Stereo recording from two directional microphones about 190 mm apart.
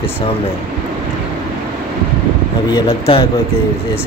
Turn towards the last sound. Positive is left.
turn(degrees=30)  # may be behind; listen again after turning